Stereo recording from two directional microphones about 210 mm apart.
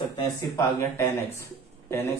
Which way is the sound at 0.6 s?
10° left (ahead or behind).